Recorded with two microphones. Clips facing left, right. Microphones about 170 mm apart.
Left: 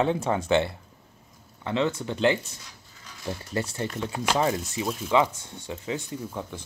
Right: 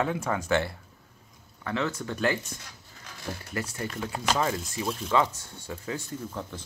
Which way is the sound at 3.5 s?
30° left (ahead or behind).